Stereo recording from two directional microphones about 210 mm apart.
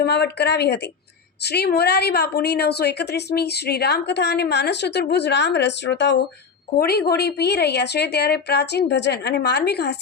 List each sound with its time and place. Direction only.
0.0 s a woman's voice: 50° left (ahead or behind)